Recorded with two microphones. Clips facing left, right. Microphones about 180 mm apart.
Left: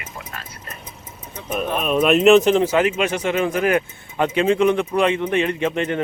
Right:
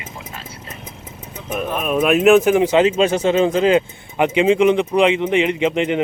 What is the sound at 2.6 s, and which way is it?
Speech, 20° right (ahead or behind).